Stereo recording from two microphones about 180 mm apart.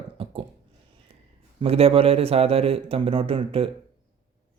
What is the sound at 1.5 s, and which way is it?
Speech, 35° right (ahead or behind).